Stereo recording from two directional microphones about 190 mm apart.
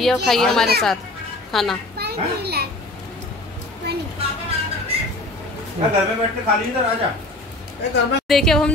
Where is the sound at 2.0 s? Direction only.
55° right (ahead or behind).